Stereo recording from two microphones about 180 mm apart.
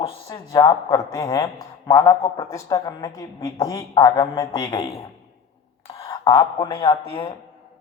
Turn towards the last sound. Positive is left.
turn(degrees=15)  # may be behind; listen again after turning